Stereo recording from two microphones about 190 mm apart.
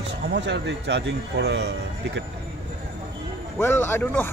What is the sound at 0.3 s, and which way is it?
Speech, 65° right (ahead or behind).